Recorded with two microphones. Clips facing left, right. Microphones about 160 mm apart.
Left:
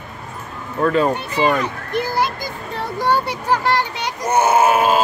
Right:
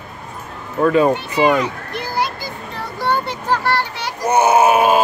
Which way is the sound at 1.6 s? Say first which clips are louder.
Left 1 dB; 50° left (ahead or behind).